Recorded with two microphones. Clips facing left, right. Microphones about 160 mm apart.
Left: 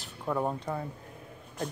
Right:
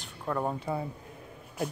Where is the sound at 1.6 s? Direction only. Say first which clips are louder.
Right 2 dB; 5° right (ahead or behind).